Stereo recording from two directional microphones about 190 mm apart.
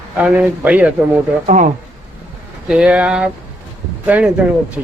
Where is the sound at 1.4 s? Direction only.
40° right (ahead or behind).